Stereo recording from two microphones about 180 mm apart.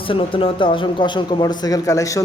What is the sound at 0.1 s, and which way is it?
Speech, 30° left (ahead or behind).